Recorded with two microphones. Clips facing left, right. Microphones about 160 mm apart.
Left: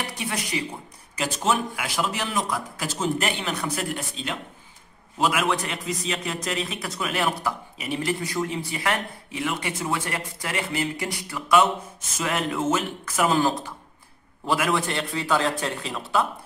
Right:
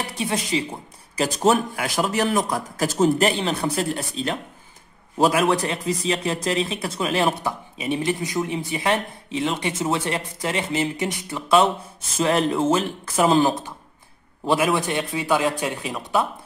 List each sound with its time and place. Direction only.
0.1 s speech: 25° right (ahead or behind)
1.1 s a man's voice: 40° right (ahead or behind); by 16.3 s 15° right (ahead or behind)